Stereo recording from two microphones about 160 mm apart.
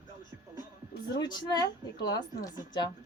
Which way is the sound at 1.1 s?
25° left (ahead or behind).